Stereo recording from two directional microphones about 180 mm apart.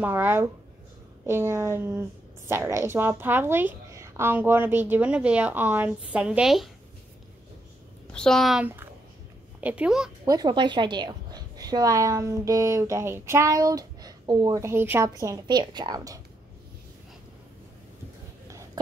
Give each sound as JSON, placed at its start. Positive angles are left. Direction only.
{"t": 0.0, "sound": "a woman's voice", "side_deg": -10}
{"t": 8.1, "sound": "a woman's voice", "side_deg": 5}
{"t": 10.2, "sound": "a woman's voice", "side_deg": -20}